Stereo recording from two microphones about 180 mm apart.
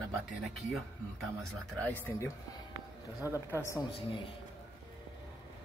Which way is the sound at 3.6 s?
15° left (ahead or behind).